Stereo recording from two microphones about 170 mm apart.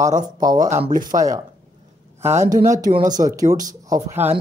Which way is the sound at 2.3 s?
45° right (ahead or behind).